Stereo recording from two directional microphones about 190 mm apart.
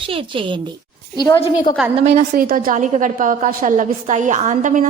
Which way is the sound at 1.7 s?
25° left (ahead or behind).